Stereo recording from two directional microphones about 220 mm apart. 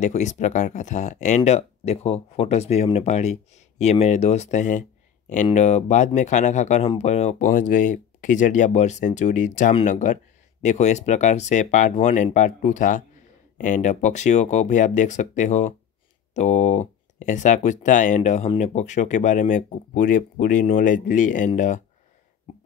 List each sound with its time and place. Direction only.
0.0 s speech: 30° left (ahead or behind)